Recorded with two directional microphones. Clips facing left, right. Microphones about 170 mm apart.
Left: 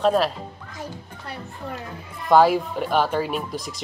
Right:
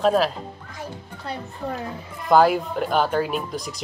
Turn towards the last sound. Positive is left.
turn(degrees=0)  # may be behind; listen again after turning